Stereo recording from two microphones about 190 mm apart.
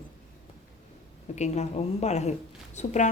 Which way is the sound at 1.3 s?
35° left (ahead or behind).